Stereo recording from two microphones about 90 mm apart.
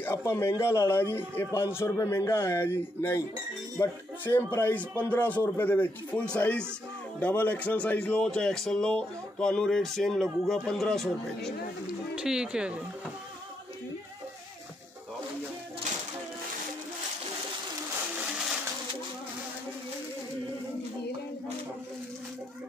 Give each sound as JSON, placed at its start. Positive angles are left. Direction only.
{"t": 0.2, "sound": "a man's voice", "side_deg": 30}
{"t": 12.2, "sound": "speech", "side_deg": -10}